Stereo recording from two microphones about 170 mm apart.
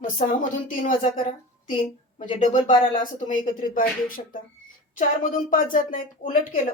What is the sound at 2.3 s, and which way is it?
A woman's voice, 45° left (ahead or behind).